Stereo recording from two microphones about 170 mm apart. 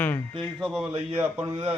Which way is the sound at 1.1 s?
10° right (ahead or behind).